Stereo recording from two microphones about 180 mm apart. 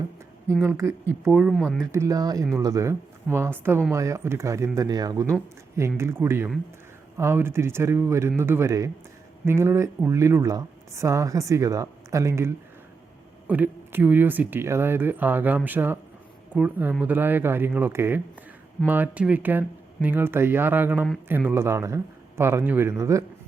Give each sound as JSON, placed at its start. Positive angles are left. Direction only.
{"t": 1.2, "sound": "speech", "side_deg": -5}
{"t": 1.9, "sound": "speech", "side_deg": -15}